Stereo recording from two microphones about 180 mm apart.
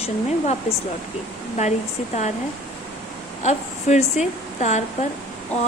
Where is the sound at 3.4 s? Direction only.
40° left (ahead or behind).